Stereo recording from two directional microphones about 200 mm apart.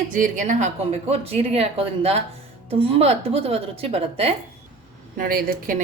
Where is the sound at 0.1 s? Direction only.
40° right (ahead or behind).